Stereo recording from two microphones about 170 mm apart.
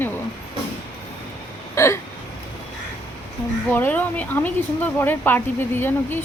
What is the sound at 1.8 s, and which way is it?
Speech, 15° left (ahead or behind).